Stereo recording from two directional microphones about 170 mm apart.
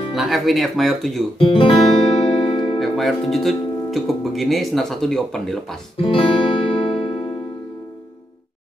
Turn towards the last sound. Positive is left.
turn(degrees=35)  # may be behind; listen again after turning